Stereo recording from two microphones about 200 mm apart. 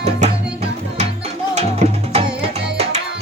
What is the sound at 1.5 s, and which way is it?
Music, 35° right (ahead or behind).